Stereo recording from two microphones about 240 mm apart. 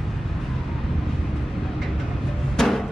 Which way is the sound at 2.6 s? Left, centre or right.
Centre.